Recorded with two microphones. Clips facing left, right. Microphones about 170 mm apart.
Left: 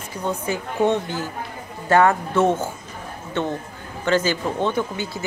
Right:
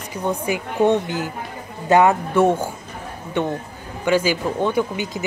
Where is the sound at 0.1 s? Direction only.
15° right (ahead or behind).